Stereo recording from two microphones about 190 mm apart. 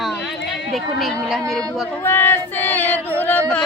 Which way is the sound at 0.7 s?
Centre (ahead or behind).